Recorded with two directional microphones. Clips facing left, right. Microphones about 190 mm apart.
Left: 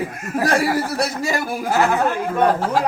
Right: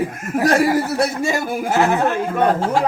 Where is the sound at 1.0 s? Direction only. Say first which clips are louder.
Right 3 dB; 25° right (ahead or behind).